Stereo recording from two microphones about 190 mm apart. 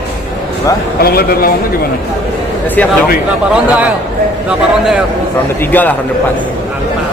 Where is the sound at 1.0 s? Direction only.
55° left (ahead or behind).